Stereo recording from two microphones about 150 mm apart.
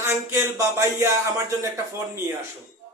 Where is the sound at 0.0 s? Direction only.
20° right (ahead or behind).